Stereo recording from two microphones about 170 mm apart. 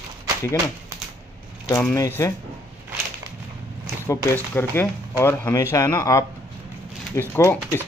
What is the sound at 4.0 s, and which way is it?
Speech, 15° left (ahead or behind).